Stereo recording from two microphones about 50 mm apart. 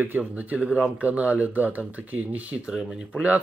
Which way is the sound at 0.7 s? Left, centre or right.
Right.